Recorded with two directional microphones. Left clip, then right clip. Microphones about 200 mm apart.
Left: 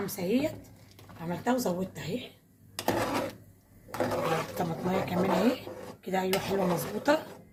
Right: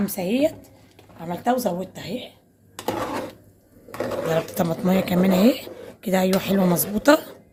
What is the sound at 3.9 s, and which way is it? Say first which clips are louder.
Sewing machine: right 3 dB; 15° left (ahead or behind).